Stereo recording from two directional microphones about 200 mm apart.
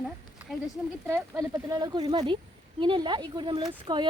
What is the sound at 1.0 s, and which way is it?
Speech, 15° right (ahead or behind).